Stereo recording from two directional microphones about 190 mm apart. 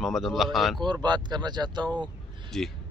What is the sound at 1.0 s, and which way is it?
Speech, 20° right (ahead or behind).